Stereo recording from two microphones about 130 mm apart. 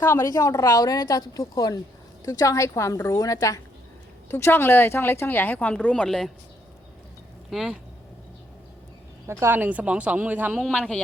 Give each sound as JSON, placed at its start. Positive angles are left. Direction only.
{"t": 0.0, "sound": "speech", "side_deg": 20}
{"t": 7.5, "sound": "speech", "side_deg": 0}
{"t": 9.2, "sound": "speech", "side_deg": -20}
{"t": 10.8, "sound": "speech", "side_deg": 10}